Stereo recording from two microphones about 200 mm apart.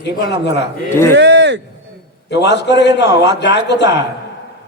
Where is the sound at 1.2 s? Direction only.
60° right (ahead or behind).